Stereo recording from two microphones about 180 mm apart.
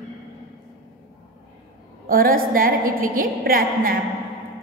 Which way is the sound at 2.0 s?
55° right (ahead or behind).